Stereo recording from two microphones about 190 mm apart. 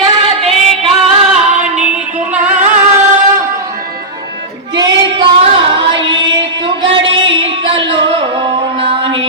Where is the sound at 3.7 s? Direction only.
50° right (ahead or behind).